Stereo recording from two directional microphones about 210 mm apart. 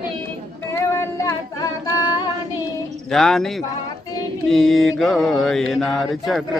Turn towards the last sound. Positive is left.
turn(degrees=0)  # may be behind; listen again after turning